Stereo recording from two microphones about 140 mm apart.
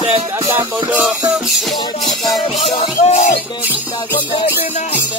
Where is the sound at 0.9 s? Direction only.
5° right (ahead or behind).